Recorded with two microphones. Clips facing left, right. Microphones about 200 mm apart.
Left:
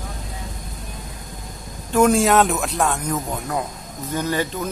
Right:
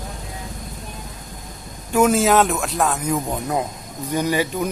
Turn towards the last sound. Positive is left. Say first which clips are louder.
# right 2 dB
turn(degrees=-10)  # may be behind; listen again after turning